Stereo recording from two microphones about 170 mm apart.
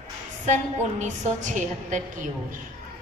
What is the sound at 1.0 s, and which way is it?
A woman's voice, 45° right (ahead or behind).